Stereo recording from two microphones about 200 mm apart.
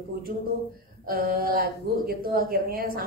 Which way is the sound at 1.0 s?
45° right (ahead or behind).